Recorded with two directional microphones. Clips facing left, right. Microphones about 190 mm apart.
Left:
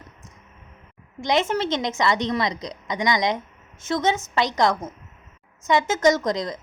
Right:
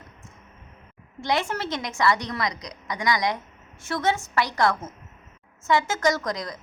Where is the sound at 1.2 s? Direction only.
20° left (ahead or behind).